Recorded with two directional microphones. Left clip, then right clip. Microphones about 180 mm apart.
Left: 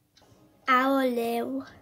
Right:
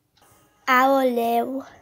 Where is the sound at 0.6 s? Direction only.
15° right (ahead or behind).